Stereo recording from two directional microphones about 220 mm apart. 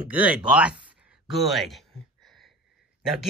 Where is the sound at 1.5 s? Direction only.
Centre (ahead or behind).